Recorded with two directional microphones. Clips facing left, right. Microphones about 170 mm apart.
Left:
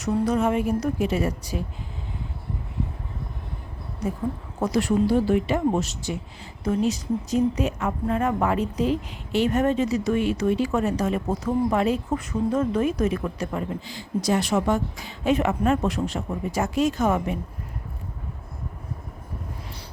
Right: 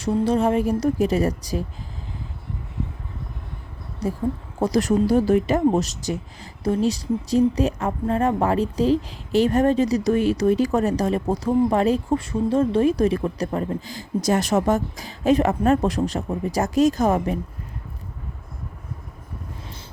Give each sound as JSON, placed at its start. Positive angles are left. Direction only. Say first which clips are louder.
{"t": 0.0, "sound": "speech", "louder": "right 2 dB", "side_deg": -30}
{"t": 4.0, "sound": "speech", "louder": "right 3 dB", "side_deg": -35}